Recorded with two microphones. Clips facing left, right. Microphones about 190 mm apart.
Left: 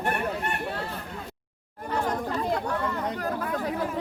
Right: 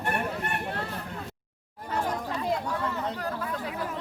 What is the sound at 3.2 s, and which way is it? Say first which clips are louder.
Chatter: left 3 dB; 45° left (ahead or behind).